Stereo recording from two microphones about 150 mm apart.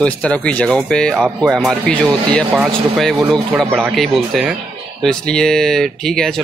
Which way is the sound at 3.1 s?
30° right (ahead or behind).